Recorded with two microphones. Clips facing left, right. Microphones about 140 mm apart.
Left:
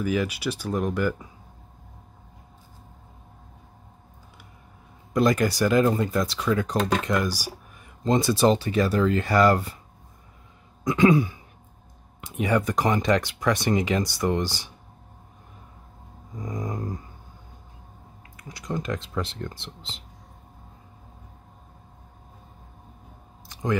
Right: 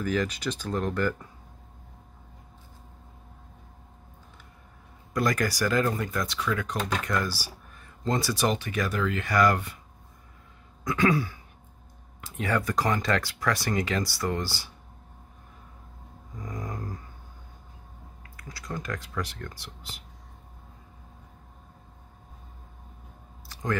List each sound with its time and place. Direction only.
0.0 s speech: 10° left (ahead or behind)
5.1 s speech: 20° left (ahead or behind)
7.1 s speech: 15° left (ahead or behind); by 9.8 s 30° left (ahead or behind)
10.8 s throat clearing: 20° left (ahead or behind)
12.2 s speech: 20° left (ahead or behind)
16.3 s speech: 20° left (ahead or behind)
18.3 s speech: 20° left (ahead or behind)
23.5 s a sound: 20° left (ahead or behind)